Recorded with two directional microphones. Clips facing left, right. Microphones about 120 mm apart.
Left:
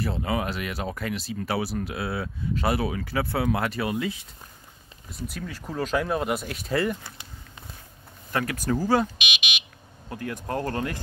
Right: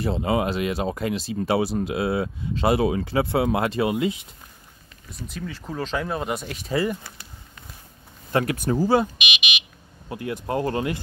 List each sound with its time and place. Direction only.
0.0 s speech: 25° right (ahead or behind)
5.3 s speech: 5° left (ahead or behind)
8.3 s speech: 20° right (ahead or behind)
9.2 s buzzer: centre (ahead or behind)
10.0 s speech: 10° right (ahead or behind)